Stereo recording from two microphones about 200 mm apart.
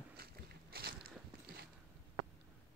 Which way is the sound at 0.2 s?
50° right (ahead or behind).